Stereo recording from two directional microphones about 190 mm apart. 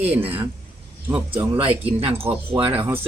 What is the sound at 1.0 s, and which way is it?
Speech, 10° right (ahead or behind).